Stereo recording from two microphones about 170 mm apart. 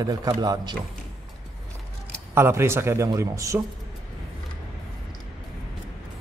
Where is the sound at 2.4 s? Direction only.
15° right (ahead or behind).